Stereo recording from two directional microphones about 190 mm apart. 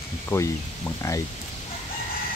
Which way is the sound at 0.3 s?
15° left (ahead or behind).